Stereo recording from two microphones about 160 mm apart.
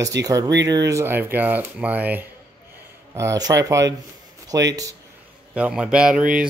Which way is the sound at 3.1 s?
20° right (ahead or behind).